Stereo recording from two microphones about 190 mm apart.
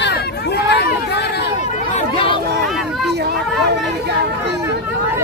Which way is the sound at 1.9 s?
30° left (ahead or behind).